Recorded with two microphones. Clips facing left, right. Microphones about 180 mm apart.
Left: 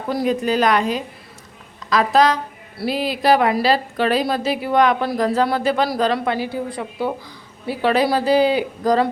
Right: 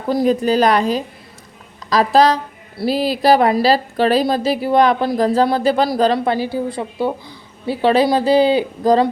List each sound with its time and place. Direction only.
0.2 s a woman's voice: 35° right (ahead or behind)